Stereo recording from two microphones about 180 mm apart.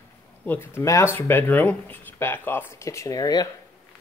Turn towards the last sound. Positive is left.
turn(degrees=20)  # may be behind; listen again after turning